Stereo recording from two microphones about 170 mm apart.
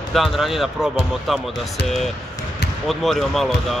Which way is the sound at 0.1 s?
Centre (ahead or behind).